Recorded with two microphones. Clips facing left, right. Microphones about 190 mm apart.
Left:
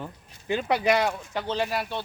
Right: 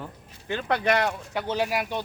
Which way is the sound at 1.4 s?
10° right (ahead or behind).